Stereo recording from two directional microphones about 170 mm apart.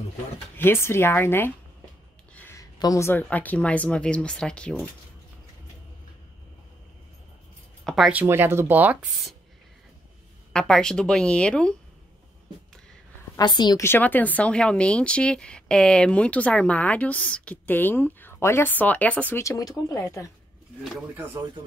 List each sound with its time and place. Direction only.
0.6 s speech: 15° left (ahead or behind)
7.8 s speech: centre (ahead or behind)
10.5 s a woman's voice: 5° left (ahead or behind)
13.4 s a woman's voice: 25° left (ahead or behind)
13.8 s a woman's voice: 10° left (ahead or behind)
20.8 s a woman's voice: centre (ahead or behind)